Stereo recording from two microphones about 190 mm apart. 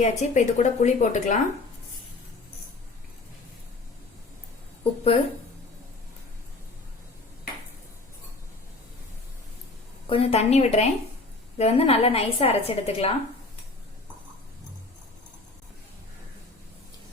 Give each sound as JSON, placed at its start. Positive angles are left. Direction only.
{"t": 0.0, "sound": "a woman's voice", "side_deg": 40}
{"t": 4.8, "sound": "a woman's voice", "side_deg": 30}
{"t": 10.1, "sound": "a woman's voice", "side_deg": 30}